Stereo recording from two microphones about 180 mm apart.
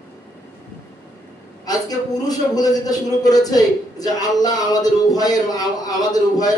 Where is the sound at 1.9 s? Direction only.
20° left (ahead or behind).